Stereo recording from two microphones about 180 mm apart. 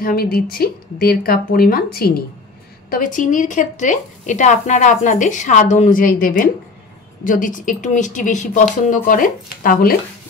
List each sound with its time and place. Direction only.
0.0 s speech: 55° left (ahead or behind)
2.9 s a woman's voice: 45° left (ahead or behind)